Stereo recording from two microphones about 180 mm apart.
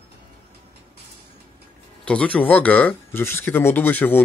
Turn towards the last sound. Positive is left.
turn(degrees=10)  # may be behind; listen again after turning